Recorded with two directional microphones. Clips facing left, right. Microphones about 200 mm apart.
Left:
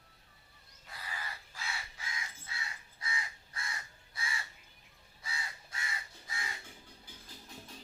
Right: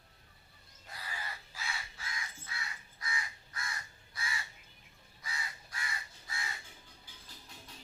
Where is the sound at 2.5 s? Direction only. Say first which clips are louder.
Even; 25° left (ahead or behind).